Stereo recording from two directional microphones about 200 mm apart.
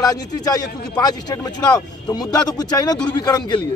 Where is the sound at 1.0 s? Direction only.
20° left (ahead or behind).